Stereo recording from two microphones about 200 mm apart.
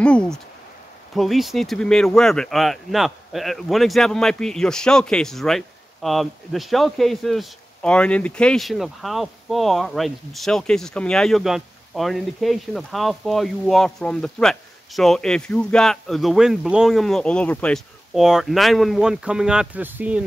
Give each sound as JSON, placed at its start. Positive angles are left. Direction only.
{"t": 0.0, "sound": "speech", "side_deg": 5}